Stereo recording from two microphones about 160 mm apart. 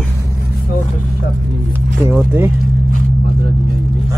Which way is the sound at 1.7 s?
15° right (ahead or behind).